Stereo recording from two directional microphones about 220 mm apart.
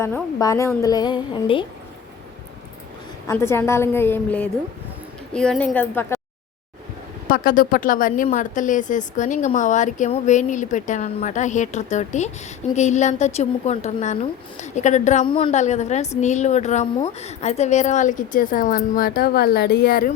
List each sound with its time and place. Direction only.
0.0 s a woman's voice: 15° left (ahead or behind)
3.2 s a woman's voice: 10° left (ahead or behind)
7.3 s a woman's voice: 40° left (ahead or behind)